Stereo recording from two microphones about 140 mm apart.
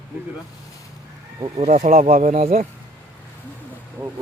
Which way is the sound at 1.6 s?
60° right (ahead or behind).